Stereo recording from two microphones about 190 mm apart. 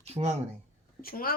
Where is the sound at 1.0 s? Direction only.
50° left (ahead or behind).